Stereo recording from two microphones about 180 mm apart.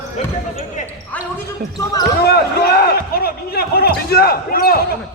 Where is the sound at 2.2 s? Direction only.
60° left (ahead or behind).